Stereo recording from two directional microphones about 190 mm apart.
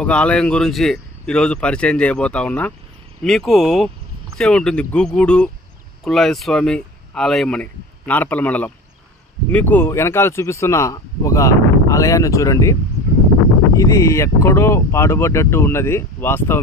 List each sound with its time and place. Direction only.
0.0 s speech: 5° left (ahead or behind)
13.7 s speech: 15° left (ahead or behind)